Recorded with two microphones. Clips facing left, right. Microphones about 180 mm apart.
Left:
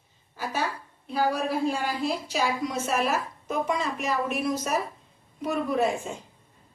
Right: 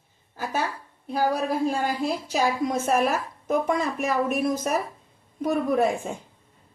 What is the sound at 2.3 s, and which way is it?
A woman's voice, 50° right (ahead or behind).